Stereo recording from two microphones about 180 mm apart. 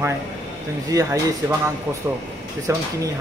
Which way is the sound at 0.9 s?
15° right (ahead or behind).